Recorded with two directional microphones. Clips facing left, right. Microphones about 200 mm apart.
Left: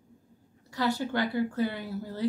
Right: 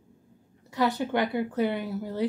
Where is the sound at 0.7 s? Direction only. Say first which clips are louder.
Right 3 dB; 20° right (ahead or behind).